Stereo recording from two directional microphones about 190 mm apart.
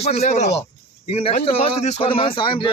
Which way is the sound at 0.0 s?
35° left (ahead or behind).